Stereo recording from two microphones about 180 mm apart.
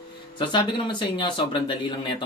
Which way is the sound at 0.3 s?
25° left (ahead or behind).